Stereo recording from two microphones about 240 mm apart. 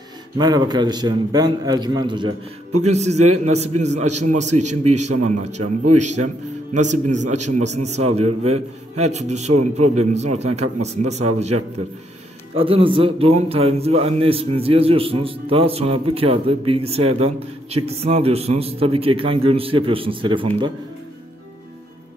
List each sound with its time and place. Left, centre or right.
0.4 s a man's voice: centre
5.6 s a man's voice: right
6.2 s a man's voice: right
7.2 s a man's voice: right
7.5 s a man's voice: right
12.5 s a man's voice: right